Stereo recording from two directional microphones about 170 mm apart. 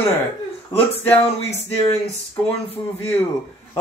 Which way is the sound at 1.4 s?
40° left (ahead or behind).